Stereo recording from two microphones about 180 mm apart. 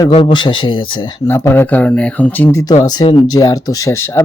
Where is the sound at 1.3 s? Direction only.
15° left (ahead or behind).